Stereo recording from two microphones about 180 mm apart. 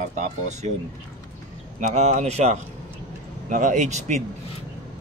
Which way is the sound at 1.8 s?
40° right (ahead or behind).